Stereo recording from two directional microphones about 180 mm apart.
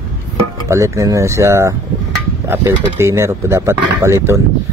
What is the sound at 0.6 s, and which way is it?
Speech, 15° right (ahead or behind).